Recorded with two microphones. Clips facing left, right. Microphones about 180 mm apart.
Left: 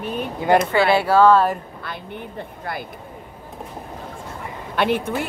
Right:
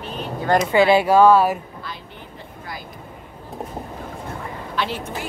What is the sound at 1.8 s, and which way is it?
Speech, 60° left (ahead or behind).